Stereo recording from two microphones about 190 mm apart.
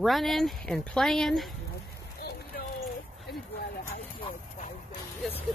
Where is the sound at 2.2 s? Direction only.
55° left (ahead or behind).